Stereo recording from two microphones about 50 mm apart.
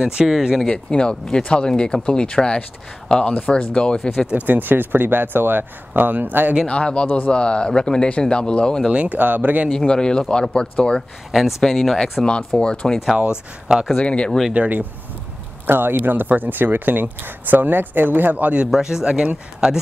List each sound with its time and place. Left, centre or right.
0.0 s speech: centre
0.7 s speech: centre
4.5 s speech: right
6.7 s speech: left
8.9 s speech: right
9.2 s speech: right
9.8 s speech: centre
11.6 s speech: centre
12.5 s speech: centre
13.1 s speech: centre
13.9 s speech: left
14.5 s speech: right
15.6 s speech: right
18.7 s speech: centre